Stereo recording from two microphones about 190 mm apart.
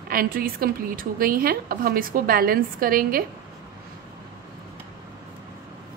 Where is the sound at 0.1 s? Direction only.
50° right (ahead or behind).